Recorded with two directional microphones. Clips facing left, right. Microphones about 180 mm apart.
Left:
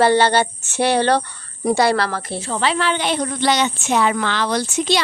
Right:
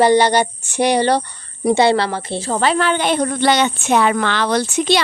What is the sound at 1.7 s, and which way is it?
Speech, 25° right (ahead or behind).